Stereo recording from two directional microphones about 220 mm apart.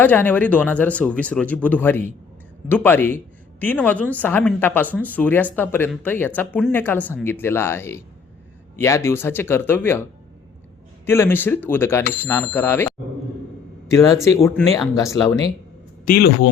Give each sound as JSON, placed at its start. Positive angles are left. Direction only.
{"t": 0.0, "sound": "speech", "side_deg": 10}
{"t": 11.0, "sound": "speech", "side_deg": 10}
{"t": 16.0, "sound": "speech", "side_deg": 45}